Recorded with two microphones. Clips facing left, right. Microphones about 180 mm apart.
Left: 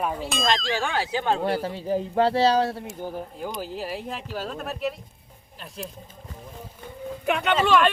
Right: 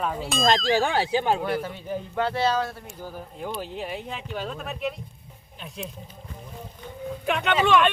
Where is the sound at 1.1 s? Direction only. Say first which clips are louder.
Even; 15° right (ahead or behind).